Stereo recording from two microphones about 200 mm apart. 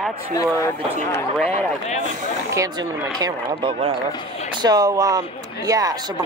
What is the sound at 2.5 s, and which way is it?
Speech, 15° right (ahead or behind).